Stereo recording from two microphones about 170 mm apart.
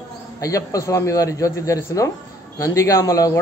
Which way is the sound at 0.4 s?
20° left (ahead or behind).